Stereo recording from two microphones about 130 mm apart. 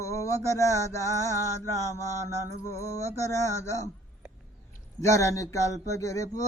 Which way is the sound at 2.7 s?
25° left (ahead or behind).